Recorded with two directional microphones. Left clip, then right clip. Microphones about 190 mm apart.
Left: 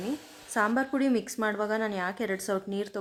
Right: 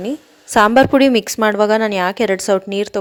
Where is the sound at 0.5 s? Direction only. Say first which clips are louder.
Right 17 dB; 50° right (ahead or behind).